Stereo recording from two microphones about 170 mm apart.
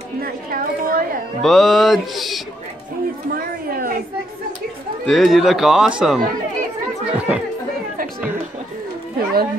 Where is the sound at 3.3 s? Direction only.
60° right (ahead or behind).